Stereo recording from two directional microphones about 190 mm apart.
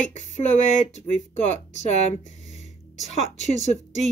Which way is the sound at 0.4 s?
40° left (ahead or behind).